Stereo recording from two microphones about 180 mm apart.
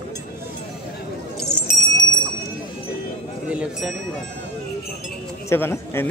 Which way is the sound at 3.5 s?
5° right (ahead or behind).